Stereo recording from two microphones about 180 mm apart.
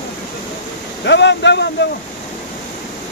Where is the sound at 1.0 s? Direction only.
75° left (ahead or behind).